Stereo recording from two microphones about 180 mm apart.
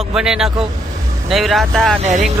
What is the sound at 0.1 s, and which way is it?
Speech, 5° right (ahead or behind).